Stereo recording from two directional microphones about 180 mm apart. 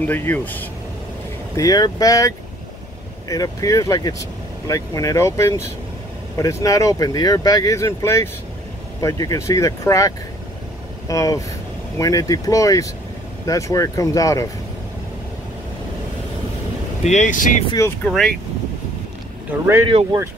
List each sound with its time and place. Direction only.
0.0 s speech: 10° left (ahead or behind)
1.6 s speech: 20° left (ahead or behind)
17.0 s speech: 40° left (ahead or behind)
17.6 s speech: 20° left (ahead or behind)
18.0 s speech: 5° left (ahead or behind)
19.5 s speech: 10° right (ahead or behind)
19.9 s speech: 35° right (ahead or behind)